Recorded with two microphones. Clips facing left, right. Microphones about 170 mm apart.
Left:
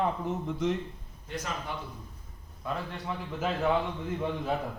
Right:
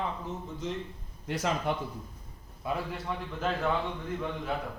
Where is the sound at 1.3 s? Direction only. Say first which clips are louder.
Right 6 dB; 85° right.